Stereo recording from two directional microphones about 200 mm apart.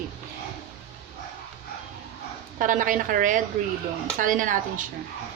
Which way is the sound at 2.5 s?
40° right (ahead or behind).